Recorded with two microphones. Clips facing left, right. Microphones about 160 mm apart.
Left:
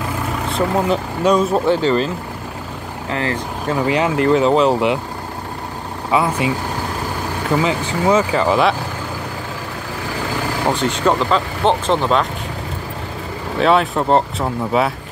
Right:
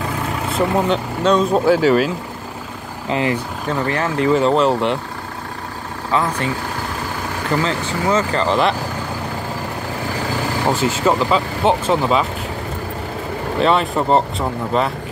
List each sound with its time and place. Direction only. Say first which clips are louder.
0.5 s speech: even; centre (ahead or behind)
1.8 s speech: right 2 dB; 5° right (ahead or behind)
3.1 s speech: right 3 dB; 15° right (ahead or behind)
3.6 s speech: left 4 dB; 10° left (ahead or behind)
4.2 s speech: even; centre (ahead or behind)
6.1 s speech: left 2 dB; 10° left (ahead or behind)
10.7 s speech: even; 5° right (ahead or behind)
13.6 s speech: left 2 dB; centre (ahead or behind)